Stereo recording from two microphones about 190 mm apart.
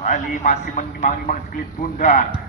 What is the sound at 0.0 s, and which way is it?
A man's voice, 40° left (ahead or behind).